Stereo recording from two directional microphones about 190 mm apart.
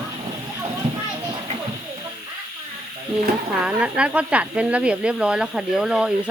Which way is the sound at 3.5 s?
5° right (ahead or behind).